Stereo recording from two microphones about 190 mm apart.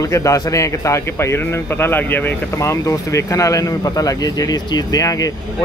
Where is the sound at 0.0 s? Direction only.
15° left (ahead or behind).